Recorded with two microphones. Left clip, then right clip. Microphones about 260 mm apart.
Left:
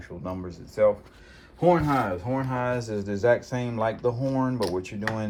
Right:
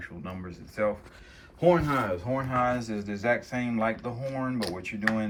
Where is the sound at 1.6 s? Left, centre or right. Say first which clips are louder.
Left 2 dB; centre.